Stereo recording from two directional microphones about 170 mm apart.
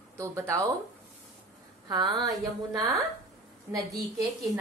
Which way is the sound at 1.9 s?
25° right (ahead or behind).